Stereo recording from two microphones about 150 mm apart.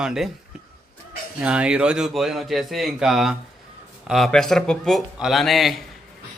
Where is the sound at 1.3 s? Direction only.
10° right (ahead or behind).